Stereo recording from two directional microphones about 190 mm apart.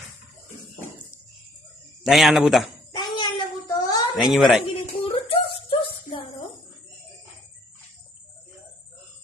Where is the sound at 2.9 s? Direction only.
25° left (ahead or behind).